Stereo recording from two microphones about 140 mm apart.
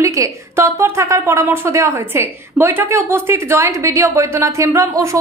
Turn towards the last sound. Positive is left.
turn(degrees=-20)  # may be behind; listen again after turning